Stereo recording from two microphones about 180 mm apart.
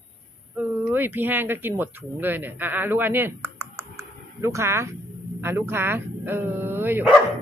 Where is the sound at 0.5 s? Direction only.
10° right (ahead or behind).